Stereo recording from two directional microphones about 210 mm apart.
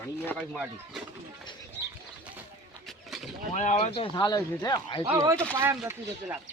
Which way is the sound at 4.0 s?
20° left (ahead or behind).